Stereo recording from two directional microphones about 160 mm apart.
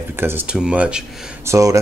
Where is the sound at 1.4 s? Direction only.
20° right (ahead or behind).